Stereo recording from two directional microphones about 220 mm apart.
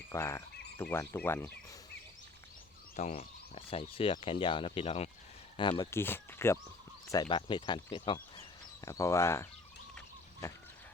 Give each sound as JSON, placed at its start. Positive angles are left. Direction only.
{"t": 0.1, "sound": "speech", "side_deg": 15}
{"t": 2.9, "sound": "speech", "side_deg": 30}